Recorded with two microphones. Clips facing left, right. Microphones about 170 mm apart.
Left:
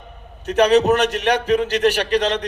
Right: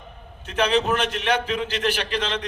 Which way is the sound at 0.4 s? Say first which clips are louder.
Left 7 dB; 40° left (ahead or behind).